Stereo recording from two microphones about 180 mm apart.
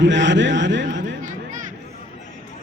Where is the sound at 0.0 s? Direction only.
85° right.